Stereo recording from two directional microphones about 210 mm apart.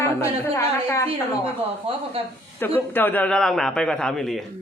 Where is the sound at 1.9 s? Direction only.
25° right (ahead or behind).